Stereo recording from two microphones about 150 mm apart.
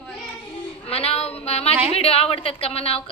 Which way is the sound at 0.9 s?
40° left (ahead or behind).